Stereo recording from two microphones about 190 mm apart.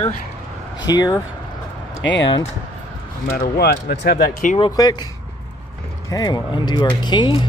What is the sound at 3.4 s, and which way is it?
Speech, 55° left (ahead or behind).